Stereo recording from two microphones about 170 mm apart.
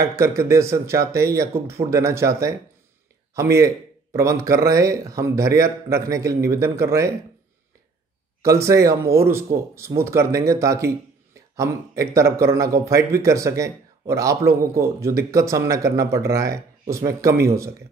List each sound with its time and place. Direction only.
0.0 s speech: 15° right (ahead or behind)
8.4 s speech: 15° right (ahead or behind)